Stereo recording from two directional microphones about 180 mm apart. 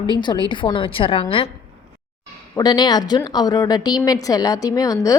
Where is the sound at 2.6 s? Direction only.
25° left (ahead or behind).